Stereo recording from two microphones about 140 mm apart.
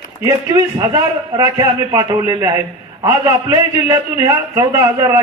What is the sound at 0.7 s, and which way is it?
A man's voice, 30° right (ahead or behind).